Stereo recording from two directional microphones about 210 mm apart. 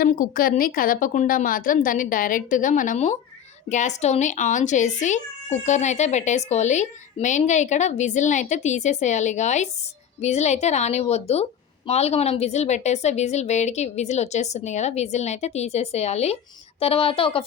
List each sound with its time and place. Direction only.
0.0 s a woman's voice: 40° left (ahead or behind); by 17.4 s 25° left (ahead or behind)